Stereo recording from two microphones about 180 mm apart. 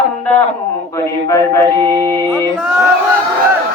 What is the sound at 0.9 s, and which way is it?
Speech, 15° left (ahead or behind).